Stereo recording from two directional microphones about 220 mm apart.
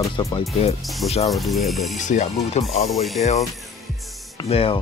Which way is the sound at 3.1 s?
30° left (ahead or behind).